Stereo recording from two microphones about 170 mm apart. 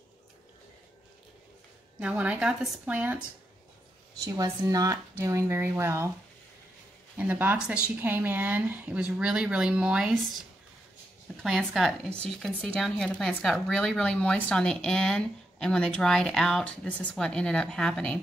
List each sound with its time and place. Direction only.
2.0 s speech: 10° right (ahead or behind)
4.2 s speech: 20° right (ahead or behind)
7.2 s speech: 10° right (ahead or behind)
11.4 s speech: centre (ahead or behind)